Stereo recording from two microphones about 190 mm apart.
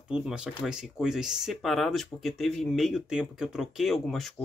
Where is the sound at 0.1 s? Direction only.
5° right (ahead or behind).